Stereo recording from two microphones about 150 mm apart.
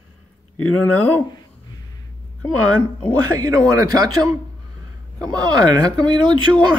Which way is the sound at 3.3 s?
25° right (ahead or behind).